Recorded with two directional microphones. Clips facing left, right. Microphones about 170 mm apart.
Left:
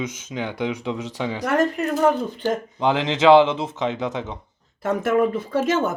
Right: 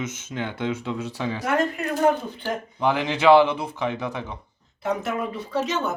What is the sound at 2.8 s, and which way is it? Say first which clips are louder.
Speech: left 1 dB; 20° left (ahead or behind).